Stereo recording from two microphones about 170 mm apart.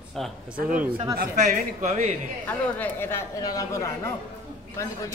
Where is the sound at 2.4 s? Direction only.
10° left (ahead or behind).